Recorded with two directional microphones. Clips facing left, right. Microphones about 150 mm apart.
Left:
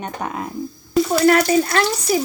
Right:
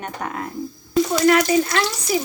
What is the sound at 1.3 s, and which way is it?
Speech, 45° left (ahead or behind).